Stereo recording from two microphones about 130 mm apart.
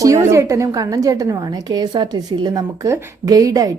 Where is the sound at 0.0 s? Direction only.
20° right (ahead or behind).